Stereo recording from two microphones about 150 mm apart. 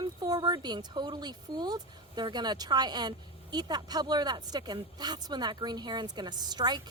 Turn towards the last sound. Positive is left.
turn(degrees=-30)  # may be behind; listen again after turning